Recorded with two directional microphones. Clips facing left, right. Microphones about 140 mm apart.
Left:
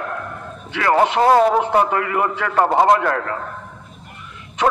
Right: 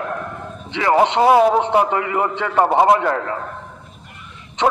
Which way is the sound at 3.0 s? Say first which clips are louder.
Right 1 dB; 20° right (ahead or behind).